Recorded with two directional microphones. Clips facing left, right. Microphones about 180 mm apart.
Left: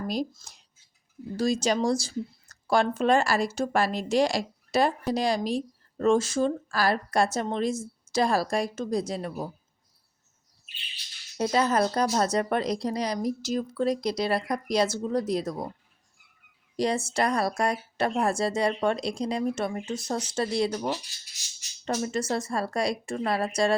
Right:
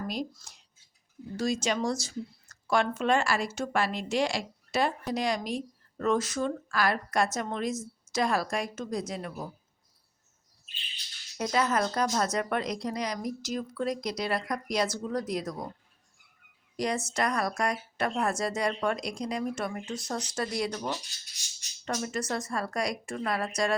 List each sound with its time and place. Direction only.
0.3 s speech: 35° left (ahead or behind)
11.3 s speech: 30° left (ahead or behind)
16.7 s speech: 30° left (ahead or behind)
21.8 s speech: 25° left (ahead or behind)